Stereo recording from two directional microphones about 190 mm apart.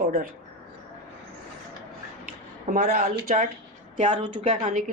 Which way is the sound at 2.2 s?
55° right (ahead or behind).